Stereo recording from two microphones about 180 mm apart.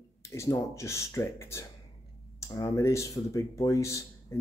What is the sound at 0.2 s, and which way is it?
Speech, 15° left (ahead or behind).